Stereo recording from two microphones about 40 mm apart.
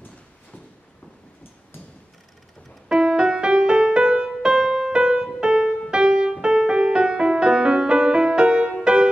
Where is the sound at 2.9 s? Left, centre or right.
Centre.